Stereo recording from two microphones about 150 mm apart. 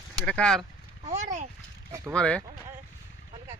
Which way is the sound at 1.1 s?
50° right (ahead or behind).